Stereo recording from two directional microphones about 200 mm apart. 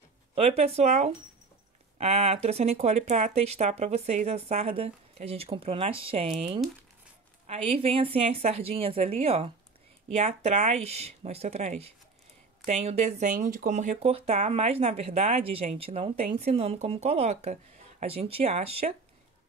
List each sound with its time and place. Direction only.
0.3 s speech: 30° right (ahead or behind)
7.4 s a woman's voice: 30° right (ahead or behind)